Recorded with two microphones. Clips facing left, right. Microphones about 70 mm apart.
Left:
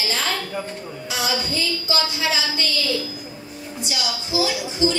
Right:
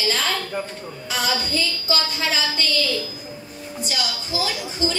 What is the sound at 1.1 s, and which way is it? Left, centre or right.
Female singing, right.